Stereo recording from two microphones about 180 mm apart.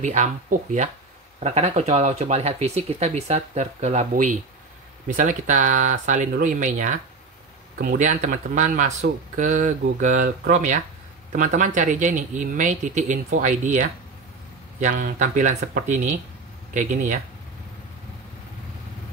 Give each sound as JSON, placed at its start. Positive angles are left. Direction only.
{"t": 0.0, "sound": "speech", "side_deg": -40}